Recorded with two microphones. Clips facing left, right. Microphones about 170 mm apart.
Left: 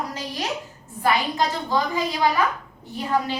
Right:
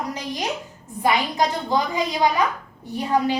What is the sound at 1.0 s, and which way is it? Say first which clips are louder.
A woman's voice: right 1 dB; 15° right (ahead or behind).